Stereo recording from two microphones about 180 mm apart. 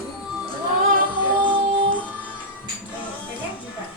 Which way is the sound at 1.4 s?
25° right (ahead or behind).